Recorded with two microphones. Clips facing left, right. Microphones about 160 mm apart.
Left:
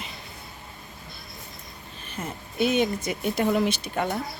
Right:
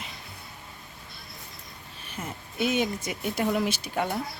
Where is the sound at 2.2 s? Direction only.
10° left (ahead or behind).